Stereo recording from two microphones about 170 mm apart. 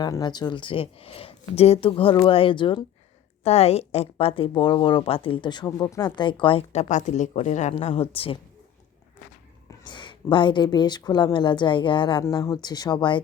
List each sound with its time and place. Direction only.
0.0 s speech: 25° left (ahead or behind)
9.6 s speech: 25° left (ahead or behind)